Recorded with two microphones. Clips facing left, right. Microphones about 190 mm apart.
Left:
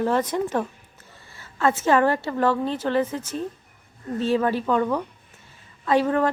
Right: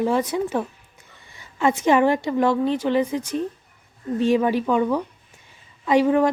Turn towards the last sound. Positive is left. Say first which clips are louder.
# right 3 dB
turn(degrees=-10)  # may be behind; listen again after turning